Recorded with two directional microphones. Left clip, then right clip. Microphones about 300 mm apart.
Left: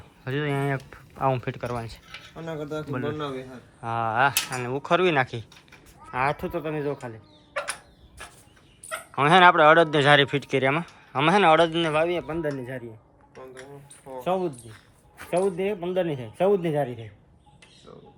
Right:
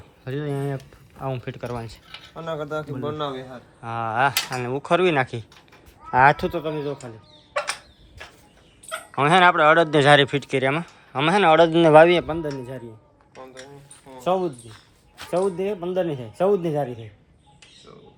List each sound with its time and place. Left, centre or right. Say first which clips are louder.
0.3 s a man's voice: left 1 dB; centre
6.1 s speech: right 10 dB; right
6.5 s a man's voice: right 2 dB; centre
9.1 s a man's voice: even; centre
12.0 s speech: right 9 dB; right
12.3 s a man's voice: right 1 dB; centre
13.3 s a sound: right 2 dB; centre
14.3 s a man's voice: right 4 dB; centre